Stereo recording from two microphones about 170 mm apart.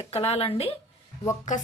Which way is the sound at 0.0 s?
35° left (ahead or behind).